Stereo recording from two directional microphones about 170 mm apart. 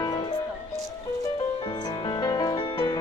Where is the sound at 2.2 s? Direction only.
25° left (ahead or behind).